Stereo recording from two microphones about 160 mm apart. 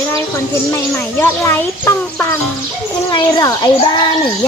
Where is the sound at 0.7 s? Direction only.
15° left (ahead or behind).